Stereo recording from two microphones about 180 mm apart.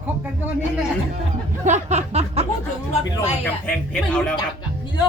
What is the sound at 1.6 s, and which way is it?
Speech, 40° right (ahead or behind).